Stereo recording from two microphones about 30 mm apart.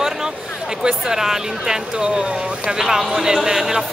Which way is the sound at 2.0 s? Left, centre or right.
Right.